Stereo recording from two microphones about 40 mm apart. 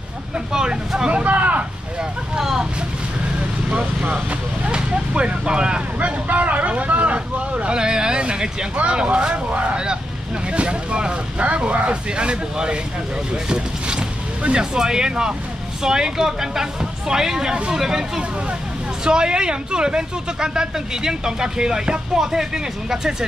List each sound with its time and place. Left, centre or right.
0.5 s speech: centre
1.1 s speech: right
3.7 s speech: right
4.6 s a sound: right
5.9 s vehicle: right
9.3 s speech: right
13.5 s a sound: right
14.6 s speech: centre